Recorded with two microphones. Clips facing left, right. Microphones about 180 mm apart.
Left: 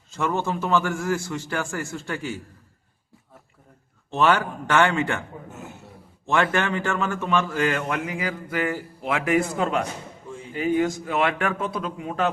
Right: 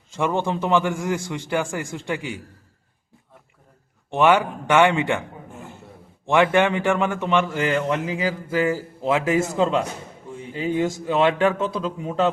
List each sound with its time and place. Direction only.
0.1 s a man's voice: 15° right (ahead or behind)
4.1 s a man's voice: 15° right (ahead or behind)
5.5 s a sound: 5° left (ahead or behind)
6.2 s a man's voice: 15° right (ahead or behind)